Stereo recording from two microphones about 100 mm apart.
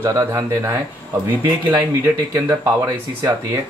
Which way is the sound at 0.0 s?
30° right (ahead or behind).